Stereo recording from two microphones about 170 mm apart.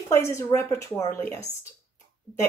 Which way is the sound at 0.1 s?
15° left (ahead or behind).